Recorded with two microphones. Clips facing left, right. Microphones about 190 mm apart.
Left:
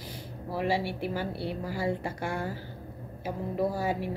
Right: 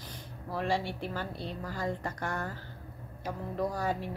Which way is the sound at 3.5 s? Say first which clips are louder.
Left 3 dB; 5° left (ahead or behind).